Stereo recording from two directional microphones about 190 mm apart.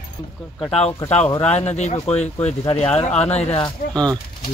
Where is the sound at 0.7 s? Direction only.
35° left (ahead or behind).